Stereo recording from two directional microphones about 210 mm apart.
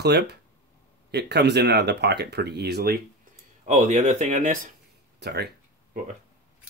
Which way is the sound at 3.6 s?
35° right (ahead or behind).